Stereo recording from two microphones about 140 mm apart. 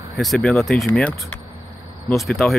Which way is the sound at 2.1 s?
Centre (ahead or behind).